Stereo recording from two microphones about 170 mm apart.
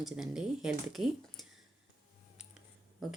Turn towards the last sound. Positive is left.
turn(degrees=0)  # may be behind; listen again after turning